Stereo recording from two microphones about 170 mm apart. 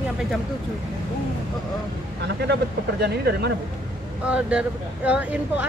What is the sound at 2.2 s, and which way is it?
Speech, 80° right.